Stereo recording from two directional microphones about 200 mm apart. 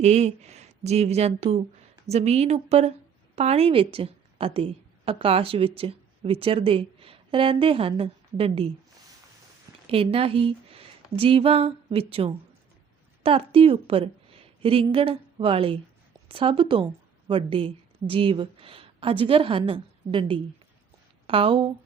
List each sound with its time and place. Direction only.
0.0 s a woman's voice: 35° right (ahead or behind)
9.8 s a woman's voice: 30° right (ahead or behind)